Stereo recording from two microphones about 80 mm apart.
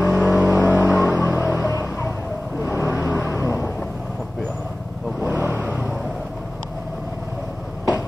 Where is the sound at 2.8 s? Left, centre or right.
Right.